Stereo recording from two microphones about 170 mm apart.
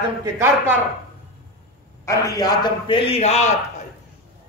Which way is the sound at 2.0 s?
20° left (ahead or behind).